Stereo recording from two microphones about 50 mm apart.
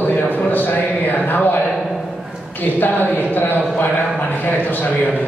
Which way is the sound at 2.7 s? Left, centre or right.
Left.